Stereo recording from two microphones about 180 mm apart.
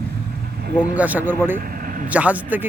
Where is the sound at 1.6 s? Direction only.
50° right (ahead or behind).